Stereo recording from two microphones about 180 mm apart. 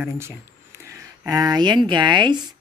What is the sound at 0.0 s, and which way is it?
Speech, 15° right (ahead or behind).